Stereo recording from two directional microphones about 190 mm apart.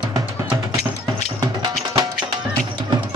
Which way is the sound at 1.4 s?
20° right (ahead or behind).